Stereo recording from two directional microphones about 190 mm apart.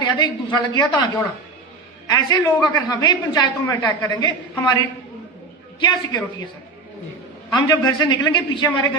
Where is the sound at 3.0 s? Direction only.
20° left (ahead or behind).